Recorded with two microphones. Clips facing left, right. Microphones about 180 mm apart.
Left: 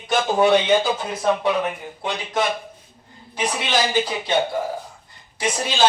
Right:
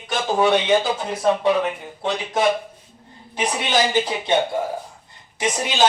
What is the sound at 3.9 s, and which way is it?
Speech, 20° right (ahead or behind).